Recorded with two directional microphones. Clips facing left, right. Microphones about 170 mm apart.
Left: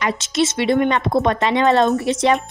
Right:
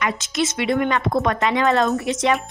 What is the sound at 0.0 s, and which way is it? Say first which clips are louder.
Speech: left 3 dB; 30° left (ahead or behind).